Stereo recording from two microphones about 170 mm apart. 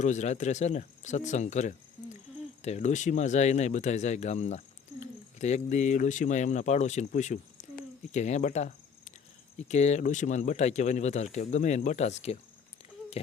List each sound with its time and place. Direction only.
0.0 s speech: 45° left (ahead or behind)